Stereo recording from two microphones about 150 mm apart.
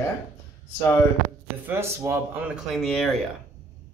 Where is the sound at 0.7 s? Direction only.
15° left (ahead or behind).